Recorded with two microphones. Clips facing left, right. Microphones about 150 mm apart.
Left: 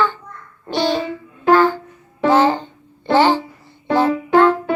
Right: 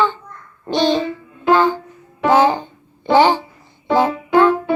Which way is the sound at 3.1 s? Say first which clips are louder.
Right 1 dB; 15° right (ahead or behind).